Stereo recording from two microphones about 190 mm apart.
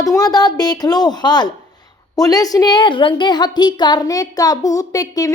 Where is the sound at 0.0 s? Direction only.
20° left (ahead or behind).